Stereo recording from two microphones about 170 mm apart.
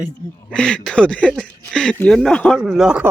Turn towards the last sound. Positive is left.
turn(degrees=-5)  # may be behind; listen again after turning